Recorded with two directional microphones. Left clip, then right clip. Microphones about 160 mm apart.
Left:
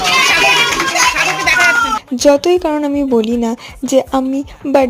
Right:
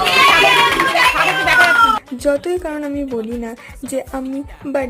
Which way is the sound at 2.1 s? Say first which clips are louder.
Left 7 dB; 30° left (ahead or behind).